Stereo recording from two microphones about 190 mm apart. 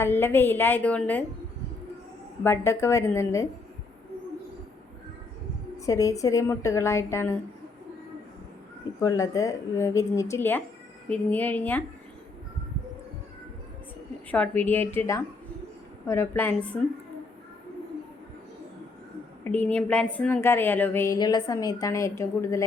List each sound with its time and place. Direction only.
0.0 s a woman's voice: 10° left (ahead or behind)
2.4 s a woman's voice: 15° left (ahead or behind)
5.8 s a woman's voice: 15° left (ahead or behind)
9.0 s a woman's voice: 15° left (ahead or behind)
14.3 s a woman's voice: 10° left (ahead or behind)
19.5 s a woman's voice: 5° left (ahead or behind)